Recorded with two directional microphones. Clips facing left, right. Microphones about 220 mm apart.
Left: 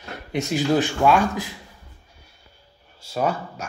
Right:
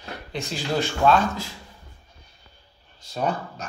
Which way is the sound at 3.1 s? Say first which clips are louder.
Left 2 dB; 10° left (ahead or behind).